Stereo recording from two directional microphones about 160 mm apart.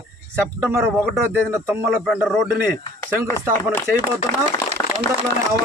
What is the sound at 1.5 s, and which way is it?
Speech, 15° right (ahead or behind).